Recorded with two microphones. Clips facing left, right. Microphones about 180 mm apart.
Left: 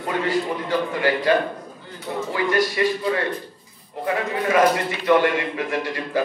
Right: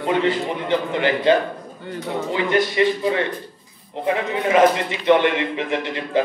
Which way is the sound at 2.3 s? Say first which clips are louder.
Right 2 dB; 25° right (ahead or behind).